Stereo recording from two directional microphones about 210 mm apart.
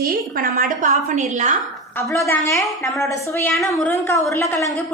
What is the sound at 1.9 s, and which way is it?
A woman's voice, 15° left (ahead or behind).